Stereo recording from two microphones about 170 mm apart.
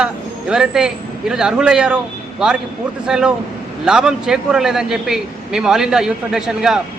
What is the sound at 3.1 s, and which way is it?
A man's voice, 5° right (ahead or behind).